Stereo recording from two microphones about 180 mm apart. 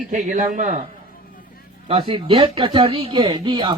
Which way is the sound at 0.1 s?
45° right (ahead or behind).